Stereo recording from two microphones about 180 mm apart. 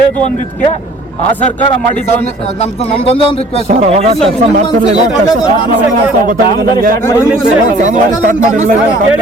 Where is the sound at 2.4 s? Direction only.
35° left (ahead or behind).